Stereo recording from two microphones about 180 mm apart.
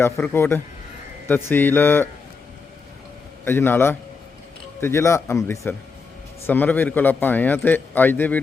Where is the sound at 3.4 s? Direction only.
10° left (ahead or behind).